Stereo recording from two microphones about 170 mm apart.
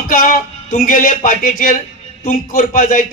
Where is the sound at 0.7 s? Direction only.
55° left (ahead or behind).